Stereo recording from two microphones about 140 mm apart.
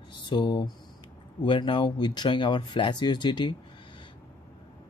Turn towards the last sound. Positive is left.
turn(degrees=35)  # may be behind; listen again after turning